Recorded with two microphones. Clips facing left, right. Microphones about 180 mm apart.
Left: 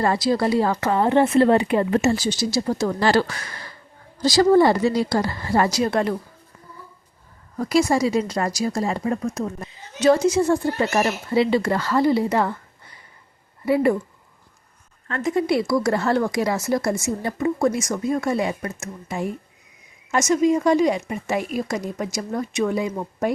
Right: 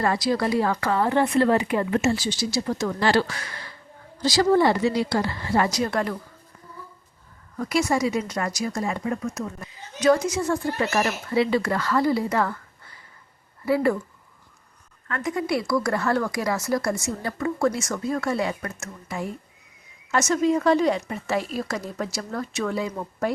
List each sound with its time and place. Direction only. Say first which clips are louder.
0.0 s speech: left 3 dB; 30° left (ahead or behind)
5.7 s speech: left 4 dB; 25° left (ahead or behind)
7.5 s speech: left 4 dB; 35° left (ahead or behind)
15.0 s speech: left 5 dB; 25° left (ahead or behind)